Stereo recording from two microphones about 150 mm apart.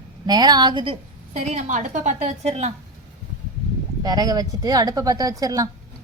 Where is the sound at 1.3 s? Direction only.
55° right (ahead or behind).